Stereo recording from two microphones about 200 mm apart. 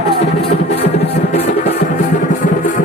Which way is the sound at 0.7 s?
30° left (ahead or behind).